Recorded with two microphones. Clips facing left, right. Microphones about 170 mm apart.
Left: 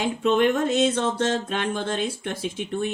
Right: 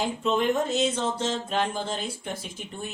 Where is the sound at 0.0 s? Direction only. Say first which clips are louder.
Left 5 dB; 70° left (ahead or behind).